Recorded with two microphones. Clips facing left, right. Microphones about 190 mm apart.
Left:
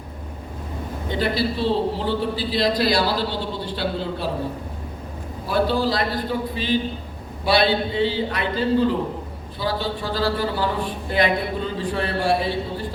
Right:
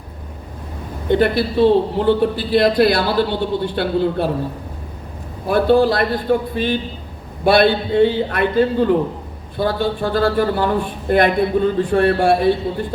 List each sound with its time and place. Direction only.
1.0 s a man's voice: 55° right (ahead or behind)
5.5 s a man's voice: 55° right (ahead or behind)